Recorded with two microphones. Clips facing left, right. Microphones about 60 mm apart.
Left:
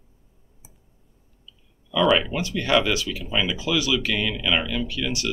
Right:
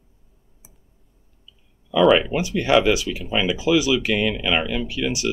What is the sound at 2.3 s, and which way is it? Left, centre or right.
Speech, centre.